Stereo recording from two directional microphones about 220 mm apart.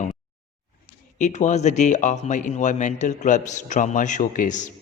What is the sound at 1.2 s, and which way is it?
A man's voice, 35° left (ahead or behind).